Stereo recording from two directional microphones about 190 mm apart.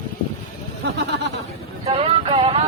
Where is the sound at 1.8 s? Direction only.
30° right (ahead or behind).